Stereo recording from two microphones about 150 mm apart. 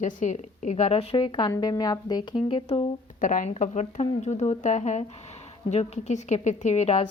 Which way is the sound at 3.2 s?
60° left (ahead or behind).